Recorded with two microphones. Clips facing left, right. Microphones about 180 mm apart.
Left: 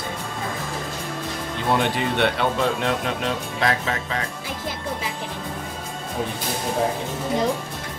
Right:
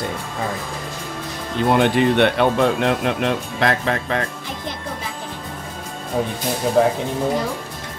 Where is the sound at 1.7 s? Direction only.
60° right (ahead or behind).